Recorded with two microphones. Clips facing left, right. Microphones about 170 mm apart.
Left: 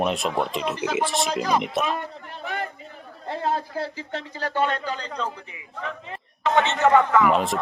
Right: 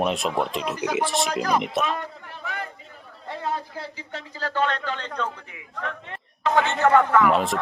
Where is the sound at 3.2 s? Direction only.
30° left (ahead or behind).